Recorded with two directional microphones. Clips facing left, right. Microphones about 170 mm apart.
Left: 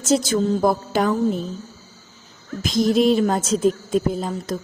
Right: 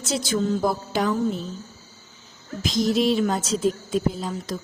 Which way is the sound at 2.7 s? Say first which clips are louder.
Left 4 dB; 50° left (ahead or behind).